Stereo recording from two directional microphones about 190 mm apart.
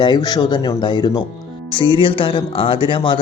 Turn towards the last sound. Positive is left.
turn(degrees=25)  # may be behind; listen again after turning